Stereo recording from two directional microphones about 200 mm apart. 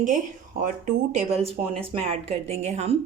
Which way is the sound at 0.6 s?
40° right (ahead or behind).